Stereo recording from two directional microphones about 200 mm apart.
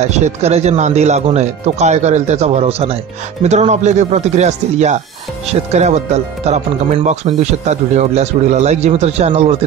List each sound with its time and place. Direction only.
0.0 s speech: 35° right (ahead or behind)